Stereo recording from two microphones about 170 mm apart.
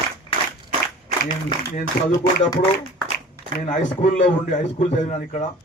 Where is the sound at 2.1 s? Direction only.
20° left (ahead or behind).